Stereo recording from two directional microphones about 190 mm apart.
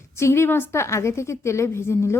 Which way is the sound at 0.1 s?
15° left (ahead or behind).